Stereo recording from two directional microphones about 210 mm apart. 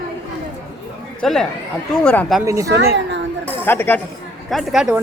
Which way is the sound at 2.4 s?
15° right (ahead or behind).